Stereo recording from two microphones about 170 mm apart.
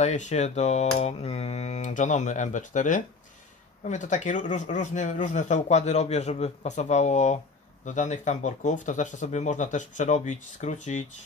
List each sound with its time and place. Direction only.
0.0 s a man's voice: 45° left (ahead or behind)